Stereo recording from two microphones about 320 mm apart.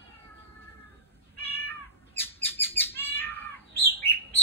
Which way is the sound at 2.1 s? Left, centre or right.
Centre.